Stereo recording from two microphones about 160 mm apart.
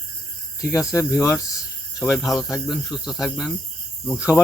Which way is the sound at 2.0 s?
Centre (ahead or behind).